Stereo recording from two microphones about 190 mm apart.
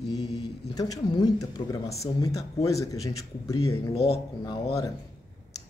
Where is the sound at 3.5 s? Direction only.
30° left (ahead or behind).